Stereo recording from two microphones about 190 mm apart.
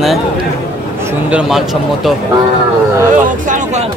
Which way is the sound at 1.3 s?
Centre (ahead or behind).